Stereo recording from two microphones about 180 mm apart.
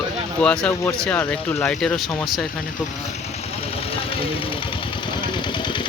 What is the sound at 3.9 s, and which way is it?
Engine, 30° left (ahead or behind).